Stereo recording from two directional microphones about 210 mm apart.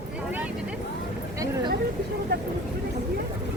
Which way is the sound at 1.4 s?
15° right (ahead or behind).